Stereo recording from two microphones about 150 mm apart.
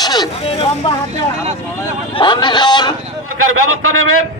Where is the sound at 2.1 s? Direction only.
30° left (ahead or behind).